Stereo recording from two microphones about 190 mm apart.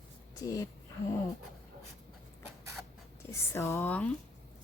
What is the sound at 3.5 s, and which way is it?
Speech, 15° left (ahead or behind).